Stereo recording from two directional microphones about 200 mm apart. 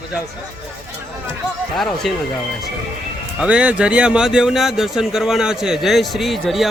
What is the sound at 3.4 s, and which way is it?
Speech, 5° right (ahead or behind).